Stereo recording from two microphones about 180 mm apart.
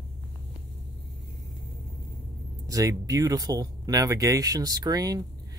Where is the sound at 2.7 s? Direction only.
20° right (ahead or behind).